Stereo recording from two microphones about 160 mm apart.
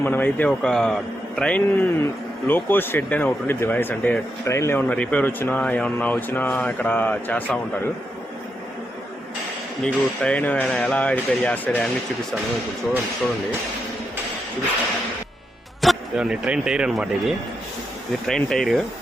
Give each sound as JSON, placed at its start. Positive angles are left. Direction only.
{"t": 0.0, "sound": "a man's voice", "side_deg": 10}
{"t": 4.8, "sound": "speech", "side_deg": 10}
{"t": 9.8, "sound": "speech", "side_deg": 5}
{"t": 15.8, "sound": "speech", "side_deg": 0}